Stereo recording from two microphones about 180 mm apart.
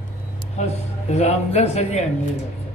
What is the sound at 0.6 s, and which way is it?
Speech, 40° left (ahead or behind).